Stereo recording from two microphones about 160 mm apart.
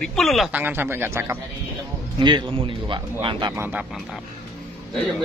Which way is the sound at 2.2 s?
30° right (ahead or behind).